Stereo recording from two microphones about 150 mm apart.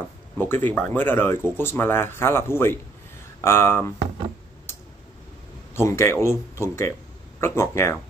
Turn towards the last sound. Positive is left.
turn(degrees=15)  # may be behind; listen again after turning